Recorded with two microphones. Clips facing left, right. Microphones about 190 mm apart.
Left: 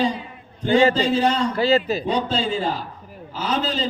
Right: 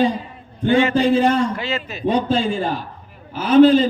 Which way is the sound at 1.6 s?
35° left (ahead or behind).